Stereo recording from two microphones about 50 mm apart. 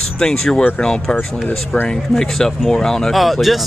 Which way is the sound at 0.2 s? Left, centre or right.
Centre.